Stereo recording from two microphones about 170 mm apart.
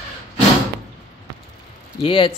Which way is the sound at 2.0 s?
30° left (ahead or behind).